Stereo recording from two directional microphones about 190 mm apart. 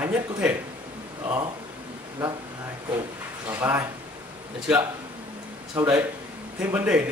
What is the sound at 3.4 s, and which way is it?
Speech, 15° right (ahead or behind).